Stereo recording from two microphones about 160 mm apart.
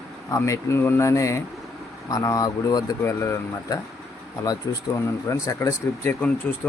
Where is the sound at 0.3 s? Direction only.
20° left (ahead or behind).